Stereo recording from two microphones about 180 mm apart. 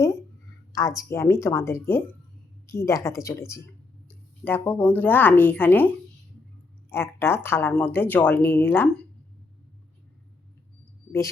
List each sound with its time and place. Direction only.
0.7 s speech: 15° left (ahead or behind)
6.9 s speech: 15° left (ahead or behind)